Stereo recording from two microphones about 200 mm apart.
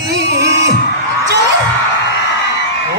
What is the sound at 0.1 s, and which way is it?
Music, 60° right (ahead or behind).